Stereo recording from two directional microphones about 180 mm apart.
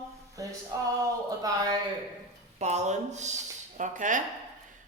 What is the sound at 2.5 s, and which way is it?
Speech, 40° right (ahead or behind).